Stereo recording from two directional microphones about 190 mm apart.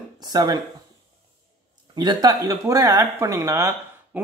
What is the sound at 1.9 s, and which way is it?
Speech, 20° right (ahead or behind).